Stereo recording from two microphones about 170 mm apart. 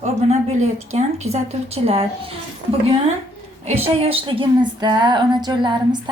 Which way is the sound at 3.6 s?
35° right (ahead or behind).